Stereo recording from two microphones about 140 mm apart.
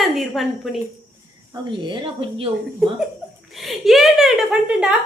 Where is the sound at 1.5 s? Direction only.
35° right (ahead or behind).